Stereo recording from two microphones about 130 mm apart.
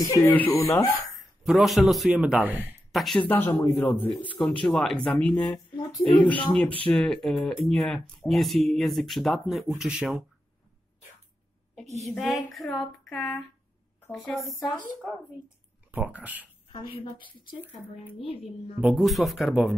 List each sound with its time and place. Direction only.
0.2 s a man's voice: 15° left (ahead or behind)
0.6 s speech: 25° left (ahead or behind)
1.1 s speech: centre (ahead or behind)
3.3 s a man's voice: 20° left (ahead or behind)
4.6 s speech: 5° left (ahead or behind)
5.8 s speech: 30° left (ahead or behind)
6.0 s a man's voice: 10° left (ahead or behind); by 10.2 s 5° right (ahead or behind)
12.0 s speech: centre (ahead or behind)
15.9 s speech: 10° right (ahead or behind)
16.7 s a woman's voice: 40° left (ahead or behind)
18.4 s speech: 5° right (ahead or behind)